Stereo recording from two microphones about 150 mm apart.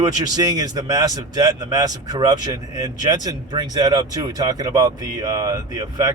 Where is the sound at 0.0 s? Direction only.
25° right (ahead or behind).